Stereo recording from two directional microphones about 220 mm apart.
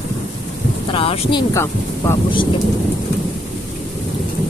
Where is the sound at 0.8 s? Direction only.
25° left (ahead or behind).